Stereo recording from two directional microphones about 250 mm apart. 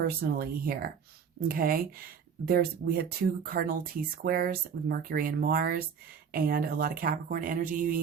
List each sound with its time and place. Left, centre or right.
0.2 s speech: right